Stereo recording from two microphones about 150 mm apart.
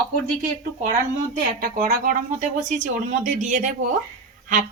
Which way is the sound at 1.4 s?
80° right.